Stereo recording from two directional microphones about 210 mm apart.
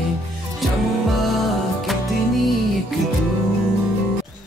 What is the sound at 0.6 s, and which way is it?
Music, centre (ahead or behind).